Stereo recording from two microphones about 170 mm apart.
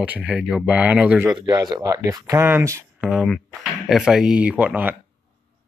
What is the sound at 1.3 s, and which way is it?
Speech, 25° right (ahead or behind).